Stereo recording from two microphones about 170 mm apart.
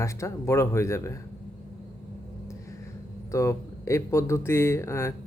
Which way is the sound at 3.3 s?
15° left (ahead or behind).